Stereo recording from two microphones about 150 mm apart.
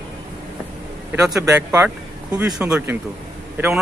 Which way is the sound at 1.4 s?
15° right (ahead or behind).